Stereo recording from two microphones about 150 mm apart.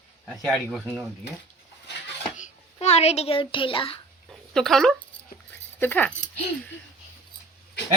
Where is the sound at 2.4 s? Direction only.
45° left (ahead or behind).